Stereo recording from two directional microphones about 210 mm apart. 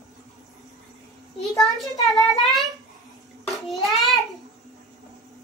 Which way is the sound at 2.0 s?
Centre (ahead or behind).